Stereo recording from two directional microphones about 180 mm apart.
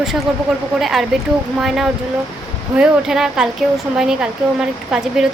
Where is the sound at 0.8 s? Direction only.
Centre (ahead or behind).